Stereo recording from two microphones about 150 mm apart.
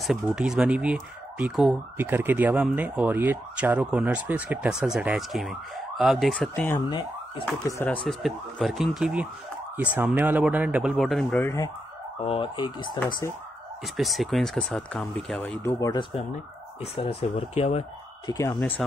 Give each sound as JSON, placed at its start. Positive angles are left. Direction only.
{"t": 0.0, "sound": "speech", "side_deg": -5}
{"t": 6.9, "sound": "speech", "side_deg": 30}
{"t": 7.6, "sound": "speech", "side_deg": 15}
{"t": 8.1, "sound": "speech", "side_deg": 0}
{"t": 12.2, "sound": "speech", "side_deg": 40}
{"t": 13.9, "sound": "speech", "side_deg": 0}
{"t": 15.9, "sound": "speech", "side_deg": 35}
{"t": 18.2, "sound": "speech", "side_deg": 25}
{"t": 18.6, "sound": "speech", "side_deg": 10}